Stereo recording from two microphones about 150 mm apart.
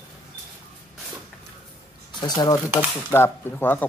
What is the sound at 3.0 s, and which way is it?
Speech, 15° left (ahead or behind).